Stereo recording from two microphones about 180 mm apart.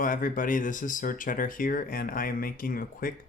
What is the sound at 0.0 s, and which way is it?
Speech, 50° left (ahead or behind).